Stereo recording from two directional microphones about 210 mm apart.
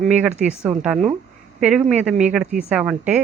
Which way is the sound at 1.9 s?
5° right (ahead or behind).